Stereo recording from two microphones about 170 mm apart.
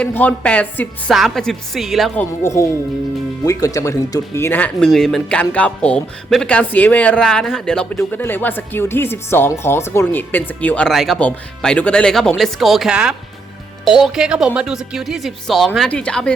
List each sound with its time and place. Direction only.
0.0 s speech: 10° left (ahead or behind)
2.4 s speech: 15° left (ahead or behind)